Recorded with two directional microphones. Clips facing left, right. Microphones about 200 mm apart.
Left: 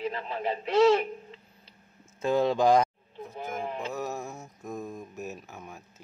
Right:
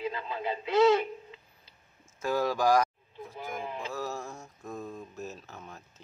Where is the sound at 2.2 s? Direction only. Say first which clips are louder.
Left 4 dB; 25° left (ahead or behind).